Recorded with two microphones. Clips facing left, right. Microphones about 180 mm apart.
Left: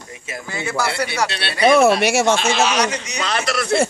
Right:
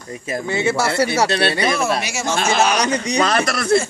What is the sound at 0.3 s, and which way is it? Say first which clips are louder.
Speech: right 7 dB; 25° right (ahead or behind).